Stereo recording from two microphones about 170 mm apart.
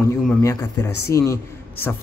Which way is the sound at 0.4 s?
20° left (ahead or behind).